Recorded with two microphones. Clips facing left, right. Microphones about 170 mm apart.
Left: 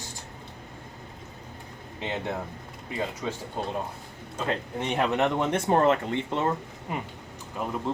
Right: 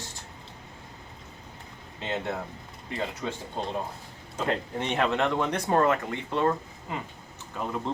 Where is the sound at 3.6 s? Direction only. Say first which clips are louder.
Right 2 dB; 5° left (ahead or behind).